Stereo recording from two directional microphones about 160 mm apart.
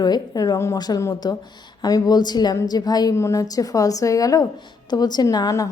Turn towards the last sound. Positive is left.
turn(degrees=20)  # may be behind; listen again after turning